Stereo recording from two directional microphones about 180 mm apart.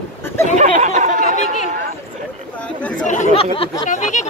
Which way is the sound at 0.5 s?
40° right (ahead or behind).